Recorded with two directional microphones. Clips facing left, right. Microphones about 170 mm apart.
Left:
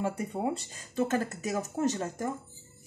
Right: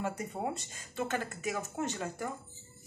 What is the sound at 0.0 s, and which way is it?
Speech, 30° left (ahead or behind).